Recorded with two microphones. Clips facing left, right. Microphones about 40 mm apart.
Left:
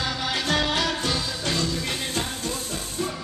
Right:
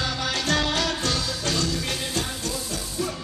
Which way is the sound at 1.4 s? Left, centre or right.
Left.